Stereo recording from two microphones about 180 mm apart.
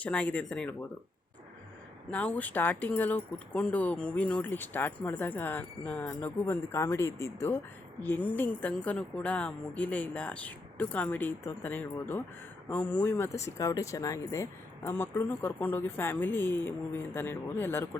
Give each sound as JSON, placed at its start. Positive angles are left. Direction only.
{"t": 0.0, "sound": "speech", "side_deg": 10}
{"t": 2.0, "sound": "speech", "side_deg": 5}